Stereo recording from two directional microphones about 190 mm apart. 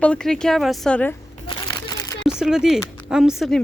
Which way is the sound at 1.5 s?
20° left (ahead or behind).